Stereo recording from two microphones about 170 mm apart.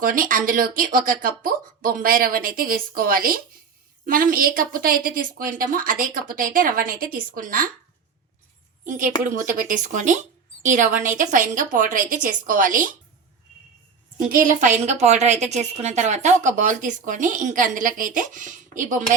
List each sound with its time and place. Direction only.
0.0 s a woman's voice: 55° right (ahead or behind)
9.6 s a woman's voice: 50° right (ahead or behind)
14.2 s a woman's voice: 55° right (ahead or behind)